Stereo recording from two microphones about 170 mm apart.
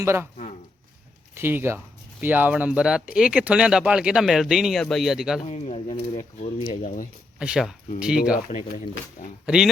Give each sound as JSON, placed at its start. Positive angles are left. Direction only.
{"t": 0.0, "sound": "speech", "side_deg": -15}
{"t": 1.4, "sound": "speech", "side_deg": -15}
{"t": 5.5, "sound": "speech", "side_deg": 40}
{"t": 7.3, "sound": "speech", "side_deg": -5}
{"t": 8.4, "sound": "speech", "side_deg": 45}